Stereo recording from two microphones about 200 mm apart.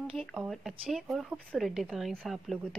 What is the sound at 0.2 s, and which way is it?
Speech, centre (ahead or behind).